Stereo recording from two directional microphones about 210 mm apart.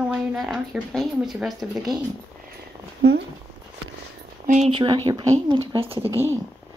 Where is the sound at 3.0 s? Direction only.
55° right (ahead or behind).